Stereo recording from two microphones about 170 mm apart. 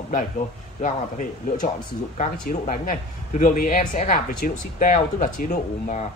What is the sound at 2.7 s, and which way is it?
A man's voice, 50° left (ahead or behind).